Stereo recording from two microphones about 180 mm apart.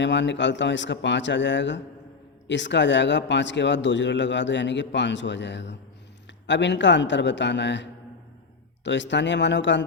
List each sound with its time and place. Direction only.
0.0 s speech: 85° left